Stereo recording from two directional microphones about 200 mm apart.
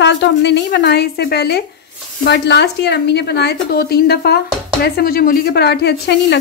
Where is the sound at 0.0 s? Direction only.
60° left (ahead or behind).